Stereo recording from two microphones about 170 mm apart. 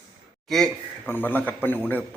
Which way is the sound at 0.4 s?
Centre (ahead or behind).